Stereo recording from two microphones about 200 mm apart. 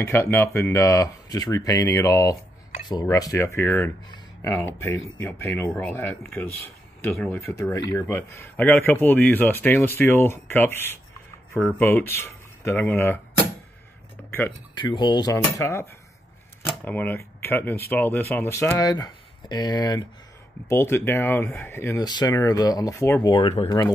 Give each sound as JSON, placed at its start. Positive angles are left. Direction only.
{"t": 0.0, "sound": "speech", "side_deg": 10}
{"t": 14.8, "sound": "speech", "side_deg": 20}